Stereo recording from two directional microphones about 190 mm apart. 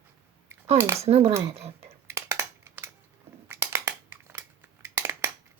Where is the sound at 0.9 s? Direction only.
35° right (ahead or behind).